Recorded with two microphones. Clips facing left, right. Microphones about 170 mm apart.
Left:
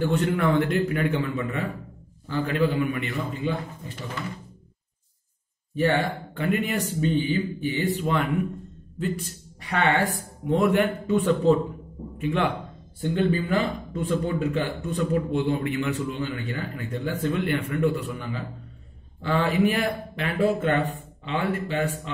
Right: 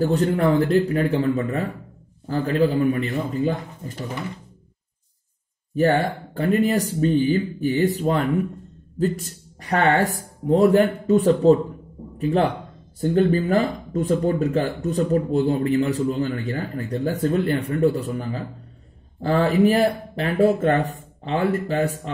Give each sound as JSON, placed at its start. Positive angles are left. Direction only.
{"t": 0.0, "sound": "speech", "side_deg": -35}
{"t": 5.8, "sound": "speech", "side_deg": -40}